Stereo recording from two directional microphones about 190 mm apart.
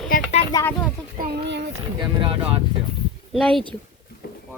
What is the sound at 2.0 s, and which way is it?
Speech, 25° right (ahead or behind).